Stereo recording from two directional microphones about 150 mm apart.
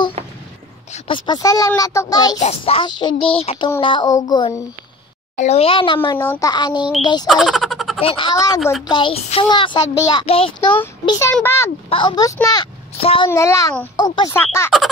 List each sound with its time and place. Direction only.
0.9 s speech: 35° left (ahead or behind)
2.4 s a child's voice: 40° left (ahead or behind)
5.3 s a child's voice: 50° left (ahead or behind)
6.1 s speech: 15° left (ahead or behind)
6.5 s speech: 30° left (ahead or behind)
7.2 s a sound: centre (ahead or behind)
8.0 s a child's voice: 35° left (ahead or behind)
11.1 s speech: 20° left (ahead or behind)
11.9 s a child's voice: 30° left (ahead or behind)
13.3 s speech: 20° left (ahead or behind)
13.9 s a child's voice: 30° left (ahead or behind)
14.3 s speech: 15° left (ahead or behind)